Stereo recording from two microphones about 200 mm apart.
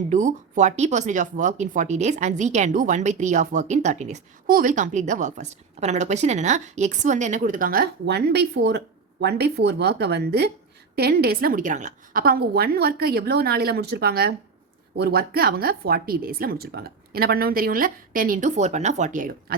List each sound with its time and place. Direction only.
0.1 s a woman's voice: 40° right (ahead or behind)